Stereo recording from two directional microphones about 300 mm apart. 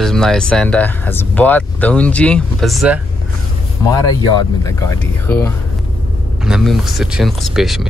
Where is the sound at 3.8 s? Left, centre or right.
Centre.